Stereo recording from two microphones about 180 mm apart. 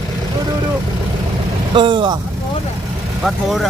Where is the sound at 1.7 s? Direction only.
25° right (ahead or behind).